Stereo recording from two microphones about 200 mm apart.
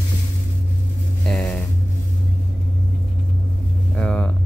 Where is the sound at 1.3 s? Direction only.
5° left (ahead or behind).